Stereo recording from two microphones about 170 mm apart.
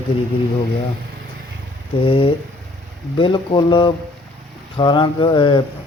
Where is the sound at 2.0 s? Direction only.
30° left (ahead or behind).